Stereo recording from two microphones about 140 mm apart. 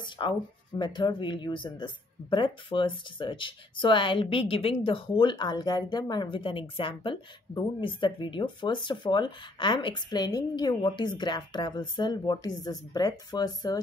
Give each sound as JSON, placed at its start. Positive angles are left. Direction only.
{"t": 0.2, "sound": "speech", "side_deg": 35}